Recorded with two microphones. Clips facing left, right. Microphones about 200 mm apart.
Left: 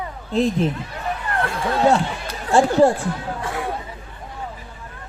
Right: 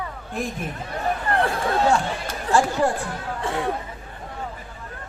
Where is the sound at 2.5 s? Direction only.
25° left (ahead or behind).